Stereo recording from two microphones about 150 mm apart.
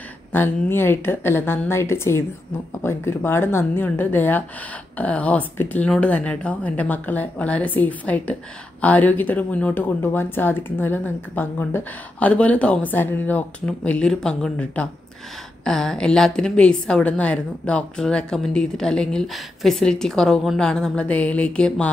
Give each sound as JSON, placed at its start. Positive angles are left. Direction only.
{"t": 0.3, "sound": "a woman's voice", "side_deg": 15}